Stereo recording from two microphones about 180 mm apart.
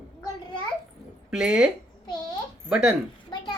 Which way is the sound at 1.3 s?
5° right (ahead or behind).